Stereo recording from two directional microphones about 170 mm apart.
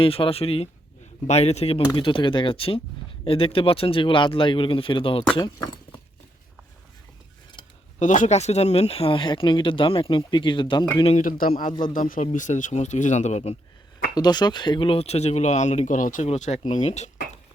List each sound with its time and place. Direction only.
0.0 s speech: 35° left (ahead or behind)
7.9 s speech: 50° left (ahead or behind); by 11.1 s 25° left (ahead or behind)
11.1 s speech: 50° left (ahead or behind)
14.2 s speech: 25° left (ahead or behind); by 17.1 s 40° left (ahead or behind)